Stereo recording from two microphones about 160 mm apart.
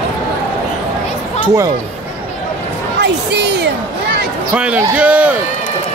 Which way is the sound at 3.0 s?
90° right.